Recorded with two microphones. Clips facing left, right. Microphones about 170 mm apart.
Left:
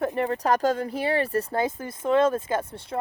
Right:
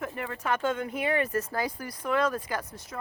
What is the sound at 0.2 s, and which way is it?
Speech, 40° left (ahead or behind).